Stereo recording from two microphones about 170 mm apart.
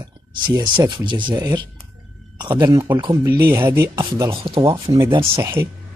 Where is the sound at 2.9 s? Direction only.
25° right (ahead or behind).